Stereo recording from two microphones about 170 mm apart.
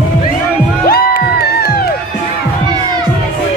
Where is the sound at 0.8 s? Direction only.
65° left (ahead or behind).